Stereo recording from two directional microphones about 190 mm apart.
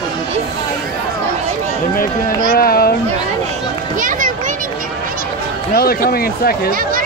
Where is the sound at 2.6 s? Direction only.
55° left (ahead or behind).